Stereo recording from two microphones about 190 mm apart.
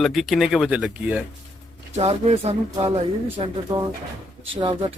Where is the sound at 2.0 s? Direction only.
30° right (ahead or behind).